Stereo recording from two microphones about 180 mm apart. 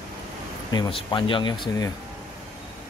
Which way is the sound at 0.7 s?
25° left (ahead or behind).